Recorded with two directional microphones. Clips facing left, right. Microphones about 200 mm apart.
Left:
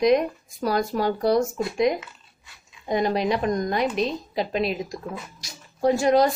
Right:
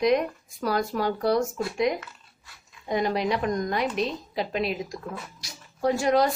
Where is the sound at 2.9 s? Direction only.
25° left (ahead or behind).